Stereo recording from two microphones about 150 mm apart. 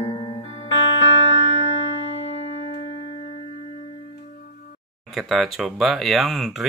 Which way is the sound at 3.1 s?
35° left (ahead or behind).